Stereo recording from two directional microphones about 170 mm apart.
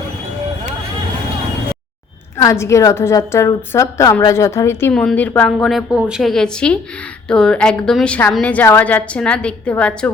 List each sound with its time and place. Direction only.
2.4 s a woman's voice: 15° left (ahead or behind)